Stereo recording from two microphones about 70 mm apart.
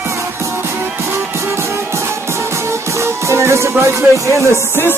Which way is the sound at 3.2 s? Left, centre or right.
Right.